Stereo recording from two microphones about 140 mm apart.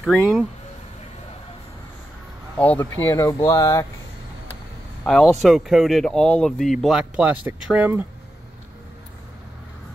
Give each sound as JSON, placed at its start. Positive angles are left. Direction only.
{"t": 0.0, "sound": "speech", "side_deg": 0}
{"t": 2.5, "sound": "speech", "side_deg": 10}
{"t": 3.1, "sound": "speech", "side_deg": 25}
{"t": 5.0, "sound": "speech", "side_deg": 5}